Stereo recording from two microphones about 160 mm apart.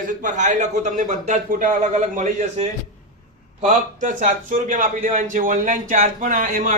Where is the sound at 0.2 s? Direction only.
50° right (ahead or behind).